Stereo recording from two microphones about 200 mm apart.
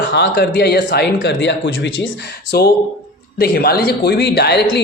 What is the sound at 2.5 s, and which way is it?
Speech, 50° left (ahead or behind).